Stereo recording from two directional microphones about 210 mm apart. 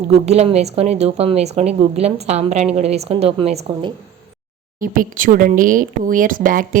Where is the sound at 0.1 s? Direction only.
30° right (ahead or behind).